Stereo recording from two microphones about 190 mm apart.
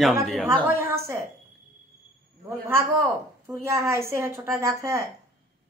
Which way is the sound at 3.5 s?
15° right (ahead or behind).